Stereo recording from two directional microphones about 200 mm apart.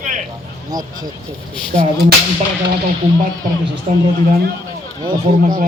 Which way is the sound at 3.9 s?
35° right (ahead or behind).